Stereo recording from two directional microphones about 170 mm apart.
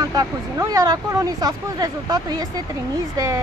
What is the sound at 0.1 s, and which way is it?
Speech, 20° right (ahead or behind).